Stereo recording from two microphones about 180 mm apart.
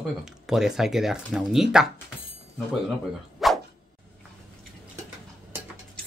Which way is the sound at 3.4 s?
Centre (ahead or behind).